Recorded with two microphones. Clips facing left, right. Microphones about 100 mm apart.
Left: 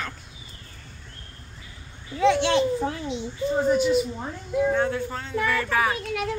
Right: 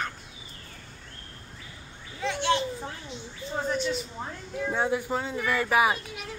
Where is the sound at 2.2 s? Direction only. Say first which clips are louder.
Left 7 dB; 90° left.